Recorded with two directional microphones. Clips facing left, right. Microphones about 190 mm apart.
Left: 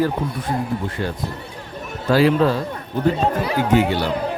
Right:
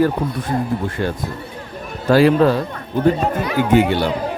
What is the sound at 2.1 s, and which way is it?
Speech, 50° right (ahead or behind).